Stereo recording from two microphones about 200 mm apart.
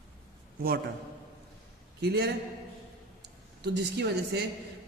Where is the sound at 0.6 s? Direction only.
50° right (ahead or behind).